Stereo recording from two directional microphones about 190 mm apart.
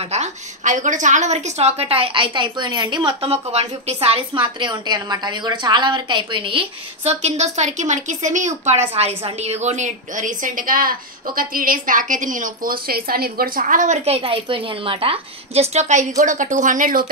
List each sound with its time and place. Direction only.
0.0 s a woman's voice: 35° right (ahead or behind)